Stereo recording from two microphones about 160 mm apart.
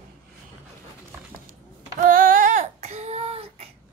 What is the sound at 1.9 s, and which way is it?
Child singing, 60° right (ahead or behind).